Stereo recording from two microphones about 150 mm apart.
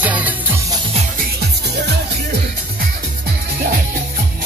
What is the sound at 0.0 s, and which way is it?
Music, 10° right (ahead or behind).